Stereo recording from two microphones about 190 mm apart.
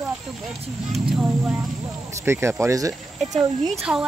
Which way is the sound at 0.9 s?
5° right (ahead or behind).